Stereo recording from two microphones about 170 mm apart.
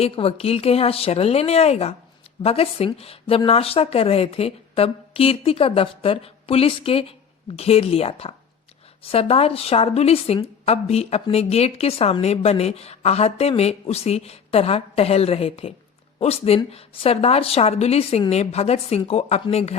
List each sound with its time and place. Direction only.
0.0 s a woman's voice: 35° left (ahead or behind)